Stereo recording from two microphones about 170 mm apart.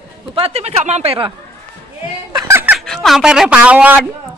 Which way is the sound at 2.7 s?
Centre (ahead or behind).